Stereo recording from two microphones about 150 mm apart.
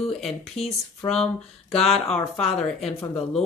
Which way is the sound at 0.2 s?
Centre (ahead or behind).